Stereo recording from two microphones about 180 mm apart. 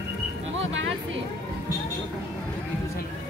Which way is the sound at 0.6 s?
90° right.